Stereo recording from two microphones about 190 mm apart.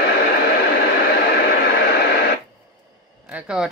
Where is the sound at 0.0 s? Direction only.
60° left (ahead or behind).